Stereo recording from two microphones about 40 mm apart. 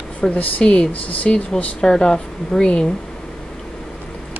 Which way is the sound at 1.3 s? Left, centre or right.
Left.